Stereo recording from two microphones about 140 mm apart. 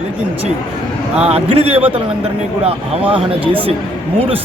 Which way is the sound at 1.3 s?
45° right (ahead or behind).